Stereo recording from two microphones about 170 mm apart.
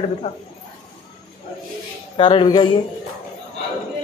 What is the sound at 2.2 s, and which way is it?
Speech, 30° left (ahead or behind).